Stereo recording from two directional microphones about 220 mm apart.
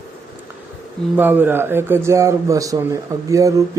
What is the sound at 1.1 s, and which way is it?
Speech, 10° right (ahead or behind).